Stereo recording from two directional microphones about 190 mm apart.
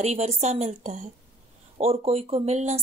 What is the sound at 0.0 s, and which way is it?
Speech, 35° right (ahead or behind).